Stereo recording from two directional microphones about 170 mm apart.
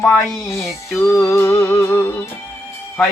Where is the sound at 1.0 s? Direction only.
15° left (ahead or behind).